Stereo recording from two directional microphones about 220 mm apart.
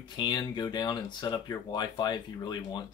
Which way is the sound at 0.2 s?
20° left (ahead or behind).